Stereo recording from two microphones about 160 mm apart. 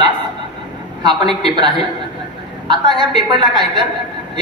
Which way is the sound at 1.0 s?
25° right (ahead or behind).